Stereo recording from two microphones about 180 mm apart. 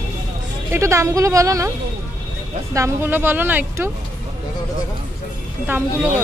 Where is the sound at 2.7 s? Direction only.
15° right (ahead or behind).